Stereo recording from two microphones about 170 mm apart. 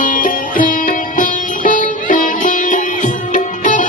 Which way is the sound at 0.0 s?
50° left (ahead or behind).